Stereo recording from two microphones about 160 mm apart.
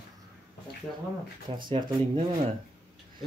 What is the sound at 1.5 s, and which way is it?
Speech, 30° right (ahead or behind).